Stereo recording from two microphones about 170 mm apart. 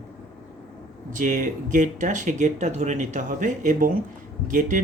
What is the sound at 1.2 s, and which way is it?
Speech, 50° right (ahead or behind).